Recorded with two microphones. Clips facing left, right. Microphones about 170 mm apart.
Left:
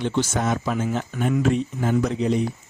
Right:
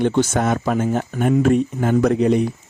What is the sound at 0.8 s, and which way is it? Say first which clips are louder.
Speech: right 5 dB; 45° right (ahead or behind).